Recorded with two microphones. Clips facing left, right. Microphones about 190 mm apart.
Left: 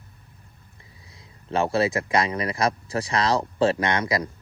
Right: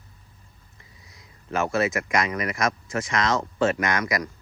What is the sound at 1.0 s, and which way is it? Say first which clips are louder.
Speech: left 1 dB; 30° left (ahead or behind).